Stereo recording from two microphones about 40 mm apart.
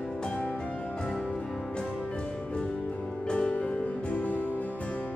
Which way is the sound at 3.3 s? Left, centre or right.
Left.